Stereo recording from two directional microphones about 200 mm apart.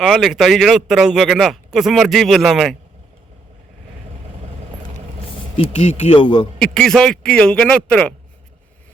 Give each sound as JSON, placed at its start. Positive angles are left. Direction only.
{"t": 0.0, "sound": "speech", "side_deg": 0}
{"t": 5.5, "sound": "speech", "side_deg": 35}
{"t": 6.6, "sound": "speech", "side_deg": 5}